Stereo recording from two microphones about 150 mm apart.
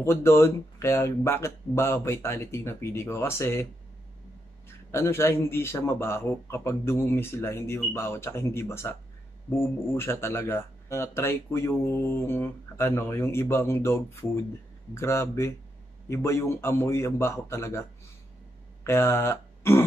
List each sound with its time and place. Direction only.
0.0 s speech: 15° left (ahead or behind)
4.6 s speech: 15° left (ahead or behind)
18.9 s speech: 15° left (ahead or behind)